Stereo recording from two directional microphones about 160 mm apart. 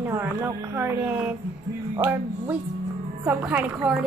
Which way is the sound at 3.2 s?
10° right (ahead or behind).